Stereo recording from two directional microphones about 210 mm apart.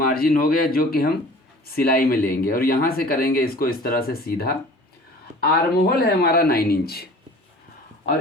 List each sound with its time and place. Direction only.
0.0 s speech: 45° left (ahead or behind)